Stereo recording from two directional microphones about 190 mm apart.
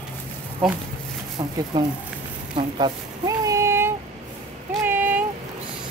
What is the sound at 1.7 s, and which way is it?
Speech, 20° right (ahead or behind).